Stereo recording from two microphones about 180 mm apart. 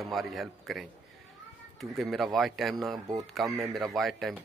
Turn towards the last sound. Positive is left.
turn(degrees=0)  # may be behind; listen again after turning